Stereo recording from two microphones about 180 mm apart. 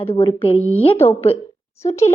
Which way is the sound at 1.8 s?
15° left (ahead or behind).